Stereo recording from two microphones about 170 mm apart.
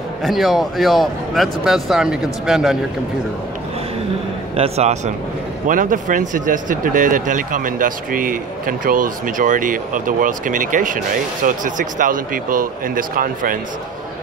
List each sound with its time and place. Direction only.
0.2 s speech: centre (ahead or behind)
4.6 s a man's voice: 40° right (ahead or behind)
5.7 s speech: 50° right (ahead or behind)